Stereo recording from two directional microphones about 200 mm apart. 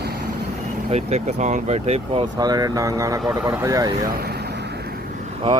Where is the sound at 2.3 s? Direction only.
20° right (ahead or behind).